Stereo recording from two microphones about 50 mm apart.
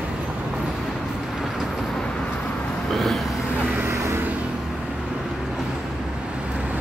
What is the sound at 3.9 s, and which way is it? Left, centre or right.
Vehicle, right.